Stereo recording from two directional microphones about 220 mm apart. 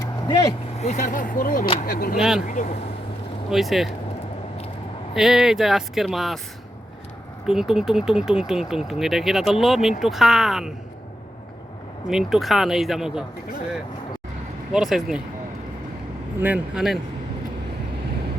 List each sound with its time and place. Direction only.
0.0 s speech: 20° left (ahead or behind); by 2.1 s 40° left (ahead or behind)
2.1 s speech: centre (ahead or behind)
2.4 s speech: 35° left (ahead or behind)
3.5 s speech: centre (ahead or behind)
5.1 s speech: centre (ahead or behind)
7.4 s speech: centre (ahead or behind)
12.0 s speech: centre (ahead or behind)
14.7 s speech: centre (ahead or behind)
16.4 s speech: 5° right (ahead or behind)